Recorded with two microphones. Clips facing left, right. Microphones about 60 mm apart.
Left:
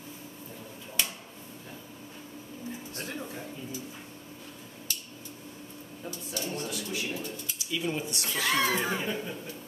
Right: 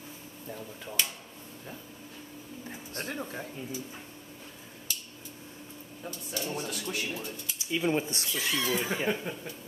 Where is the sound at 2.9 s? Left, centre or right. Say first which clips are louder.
Right 6 dB; right.